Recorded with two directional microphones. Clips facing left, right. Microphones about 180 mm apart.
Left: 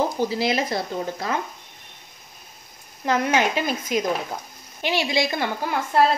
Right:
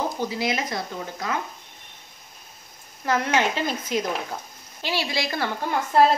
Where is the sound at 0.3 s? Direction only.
30° left (ahead or behind).